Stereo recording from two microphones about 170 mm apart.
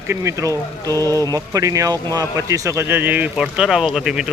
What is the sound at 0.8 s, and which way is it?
Speech, 15° left (ahead or behind).